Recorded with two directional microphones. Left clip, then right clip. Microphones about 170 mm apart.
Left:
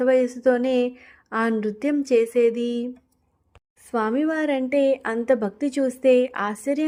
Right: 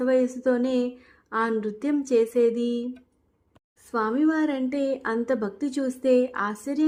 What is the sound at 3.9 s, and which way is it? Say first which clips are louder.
A woman's voice: left 1 dB; 35° left (ahead or behind).